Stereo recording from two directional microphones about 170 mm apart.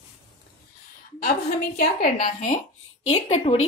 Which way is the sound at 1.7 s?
60° left (ahead or behind).